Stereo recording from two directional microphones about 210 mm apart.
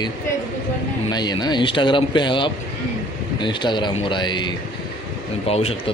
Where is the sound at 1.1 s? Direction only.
20° left (ahead or behind).